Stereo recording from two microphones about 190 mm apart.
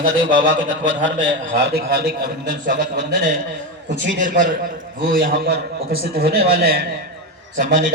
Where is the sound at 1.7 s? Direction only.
55° right (ahead or behind).